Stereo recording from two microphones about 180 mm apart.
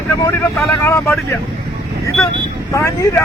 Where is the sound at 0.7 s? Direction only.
15° left (ahead or behind).